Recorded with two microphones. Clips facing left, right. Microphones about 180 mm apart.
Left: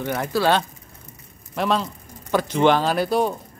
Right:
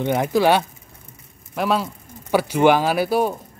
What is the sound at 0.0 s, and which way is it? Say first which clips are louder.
Speech: right 4 dB; 20° right (ahead or behind).